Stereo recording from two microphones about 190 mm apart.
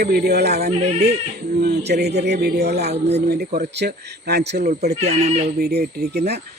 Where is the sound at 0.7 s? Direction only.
35° right (ahead or behind).